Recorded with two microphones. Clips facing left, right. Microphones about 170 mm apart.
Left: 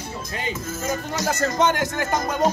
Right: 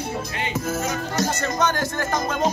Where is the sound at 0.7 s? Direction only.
70° right (ahead or behind).